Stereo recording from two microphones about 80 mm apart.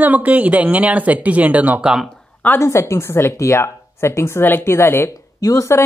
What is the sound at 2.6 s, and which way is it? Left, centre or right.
Speech, left.